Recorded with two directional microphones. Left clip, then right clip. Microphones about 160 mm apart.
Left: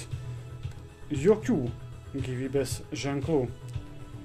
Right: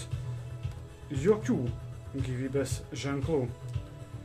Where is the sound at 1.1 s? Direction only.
30° left (ahead or behind).